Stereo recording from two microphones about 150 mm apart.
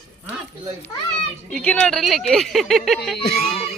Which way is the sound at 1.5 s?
10° left (ahead or behind).